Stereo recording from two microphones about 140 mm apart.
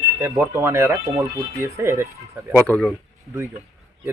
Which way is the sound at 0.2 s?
20° right (ahead or behind).